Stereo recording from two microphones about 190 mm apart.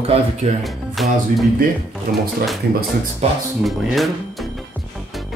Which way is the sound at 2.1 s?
50° right (ahead or behind).